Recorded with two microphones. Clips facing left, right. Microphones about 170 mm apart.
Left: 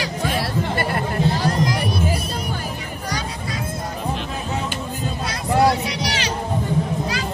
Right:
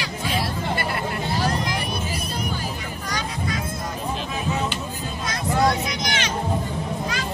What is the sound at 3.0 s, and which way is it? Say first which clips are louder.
Music: even; 35° left (ahead or behind).